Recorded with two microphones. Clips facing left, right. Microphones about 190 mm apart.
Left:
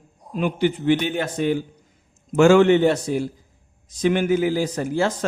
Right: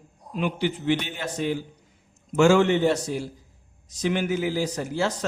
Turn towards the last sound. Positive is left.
turn(degrees=55)  # may be behind; listen again after turning